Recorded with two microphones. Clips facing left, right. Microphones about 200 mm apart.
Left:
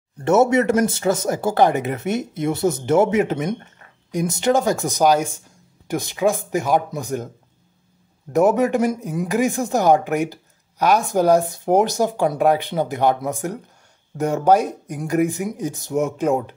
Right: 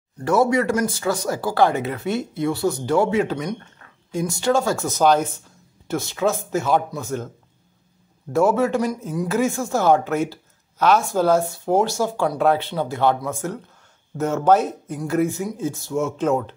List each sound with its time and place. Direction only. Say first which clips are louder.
0.2 s speech: left 3 dB; 25° left (ahead or behind)
8.3 s speech: left 2 dB; 15° left (ahead or behind)